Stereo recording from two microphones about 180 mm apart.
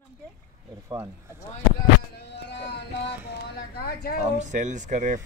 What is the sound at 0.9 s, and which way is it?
Speech, 20° right (ahead or behind).